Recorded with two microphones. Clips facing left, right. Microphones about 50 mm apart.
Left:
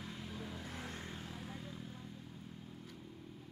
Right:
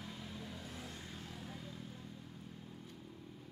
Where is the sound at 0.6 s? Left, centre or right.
Left.